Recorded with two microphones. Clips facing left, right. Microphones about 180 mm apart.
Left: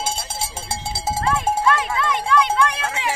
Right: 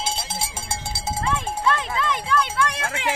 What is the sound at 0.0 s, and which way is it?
Cowbell, 50° left (ahead or behind).